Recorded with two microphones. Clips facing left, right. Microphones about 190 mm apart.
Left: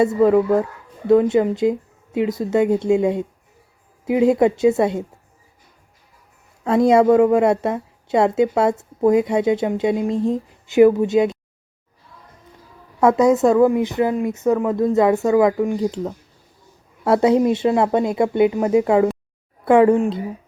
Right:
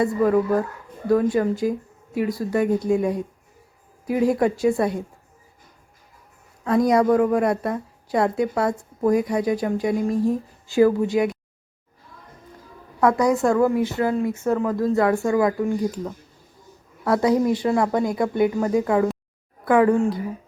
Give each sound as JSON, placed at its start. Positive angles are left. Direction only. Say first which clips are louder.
{"t": 0.0, "sound": "a woman's voice", "louder": "left 4 dB", "side_deg": 25}
{"t": 6.7, "sound": "a woman's voice", "louder": "left 4 dB", "side_deg": 25}
{"t": 13.0, "sound": "a woman's voice", "louder": "left 4 dB", "side_deg": 25}